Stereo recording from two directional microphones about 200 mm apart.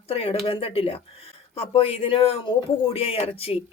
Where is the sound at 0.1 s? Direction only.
30° left (ahead or behind).